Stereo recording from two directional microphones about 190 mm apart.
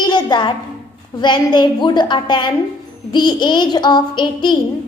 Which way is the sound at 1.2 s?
25° left (ahead or behind).